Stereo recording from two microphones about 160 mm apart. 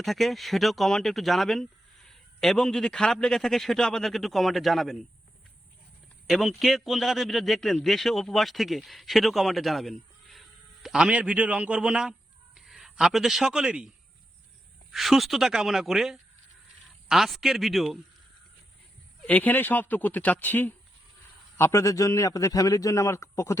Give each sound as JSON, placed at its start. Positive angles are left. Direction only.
{"t": 0.0, "sound": "a man's voice", "side_deg": 0}
{"t": 6.2, "sound": "a man's voice", "side_deg": 0}
{"t": 19.2, "sound": "a man's voice", "side_deg": 10}